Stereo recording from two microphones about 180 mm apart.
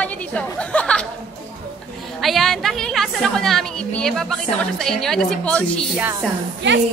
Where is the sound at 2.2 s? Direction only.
Centre (ahead or behind).